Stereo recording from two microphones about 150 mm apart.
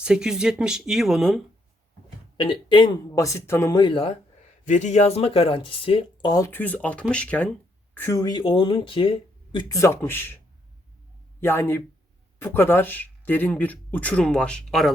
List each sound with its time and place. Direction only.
0.0 s speech: 5° right (ahead or behind)
2.4 s speech: 35° left (ahead or behind); by 3.8 s 15° left (ahead or behind)
3.8 s speech: 35° left (ahead or behind)
4.6 s speech: 55° left (ahead or behind); by 6.3 s 35° left (ahead or behind)
6.3 s speech: 15° left (ahead or behind)
11.3 s speech: 15° left (ahead or behind)